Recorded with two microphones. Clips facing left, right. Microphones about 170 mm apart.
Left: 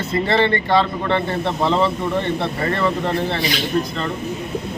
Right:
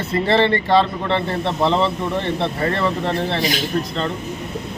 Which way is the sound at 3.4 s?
45° right (ahead or behind).